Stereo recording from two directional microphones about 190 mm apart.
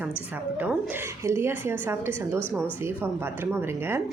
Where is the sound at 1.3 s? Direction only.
15° right (ahead or behind).